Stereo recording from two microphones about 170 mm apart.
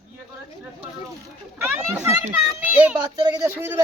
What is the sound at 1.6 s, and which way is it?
A child's voice, 10° right (ahead or behind).